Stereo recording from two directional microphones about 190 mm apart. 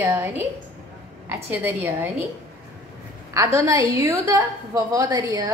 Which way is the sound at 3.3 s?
15° right (ahead or behind).